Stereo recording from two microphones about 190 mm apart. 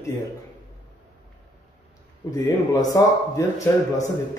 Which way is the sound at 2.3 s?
20° left (ahead or behind).